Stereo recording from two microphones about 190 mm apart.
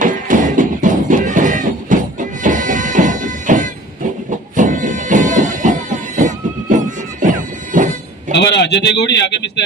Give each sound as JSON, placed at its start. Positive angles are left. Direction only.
{"t": 0.0, "sound": "music", "side_deg": -45}
{"t": 8.4, "sound": "speech", "side_deg": 65}